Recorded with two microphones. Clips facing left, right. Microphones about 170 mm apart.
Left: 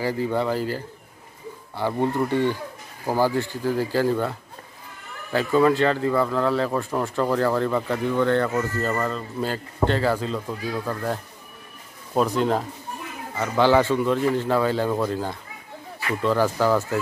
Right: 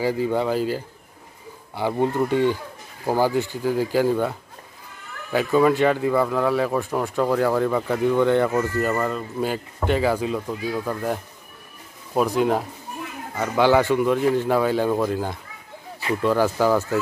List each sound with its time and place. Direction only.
0.0 s speech: 15° right (ahead or behind)